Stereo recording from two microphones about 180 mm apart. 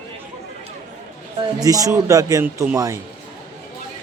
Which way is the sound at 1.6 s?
20° right (ahead or behind).